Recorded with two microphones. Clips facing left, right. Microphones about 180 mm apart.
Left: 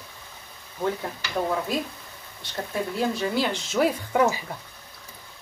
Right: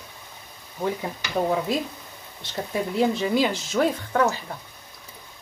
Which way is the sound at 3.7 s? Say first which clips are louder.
Even; 5° left (ahead or behind).